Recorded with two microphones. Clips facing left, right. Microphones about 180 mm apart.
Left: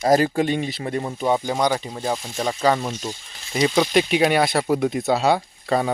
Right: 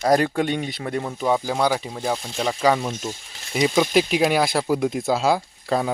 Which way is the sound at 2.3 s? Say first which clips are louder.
Even; 10° left (ahead or behind).